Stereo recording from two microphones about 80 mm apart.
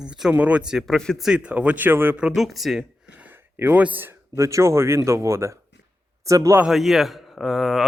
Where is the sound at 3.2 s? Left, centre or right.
Right.